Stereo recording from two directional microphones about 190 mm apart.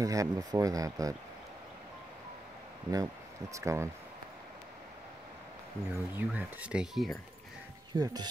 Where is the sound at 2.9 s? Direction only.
15° right (ahead or behind).